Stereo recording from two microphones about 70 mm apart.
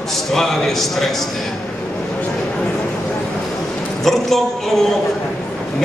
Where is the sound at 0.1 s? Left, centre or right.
Centre.